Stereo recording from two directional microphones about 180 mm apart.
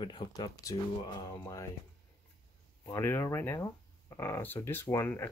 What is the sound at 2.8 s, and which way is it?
Speech, 15° left (ahead or behind).